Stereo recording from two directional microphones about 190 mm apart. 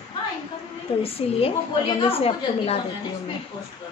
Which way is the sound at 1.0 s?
30° left (ahead or behind).